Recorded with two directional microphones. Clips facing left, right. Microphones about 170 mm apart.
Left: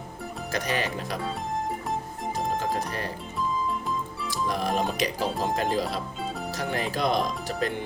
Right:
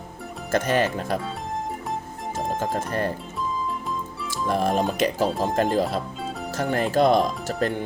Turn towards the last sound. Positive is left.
turn(degrees=-50)  # may be behind; listen again after turning